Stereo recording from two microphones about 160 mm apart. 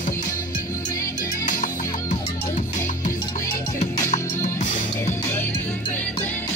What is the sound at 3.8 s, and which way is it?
Music, 50° left (ahead or behind).